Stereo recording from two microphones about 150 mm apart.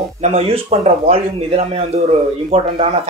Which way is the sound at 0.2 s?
45° right (ahead or behind).